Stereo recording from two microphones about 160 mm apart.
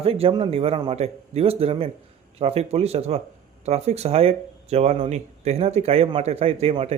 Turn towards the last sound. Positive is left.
turn(degrees=-40)  # may be behind; listen again after turning